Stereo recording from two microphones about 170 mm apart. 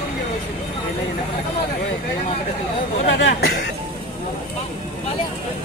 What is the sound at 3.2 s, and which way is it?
Speech, 65° left (ahead or behind).